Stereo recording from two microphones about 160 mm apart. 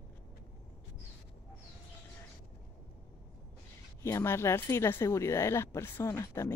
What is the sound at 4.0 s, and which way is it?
Speech, 15° left (ahead or behind).